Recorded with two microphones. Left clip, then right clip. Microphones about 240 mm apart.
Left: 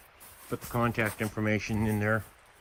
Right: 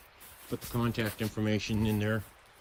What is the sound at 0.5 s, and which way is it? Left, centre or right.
Speech, centre.